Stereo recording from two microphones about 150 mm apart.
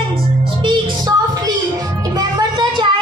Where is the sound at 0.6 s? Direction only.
30° right (ahead or behind).